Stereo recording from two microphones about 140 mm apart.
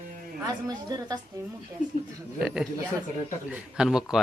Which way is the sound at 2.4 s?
5° right (ahead or behind).